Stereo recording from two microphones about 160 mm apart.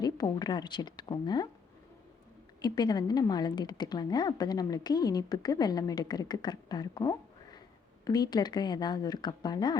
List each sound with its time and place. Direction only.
0.0 s a woman's voice: 25° left (ahead or behind)
2.6 s a woman's voice: 25° left (ahead or behind)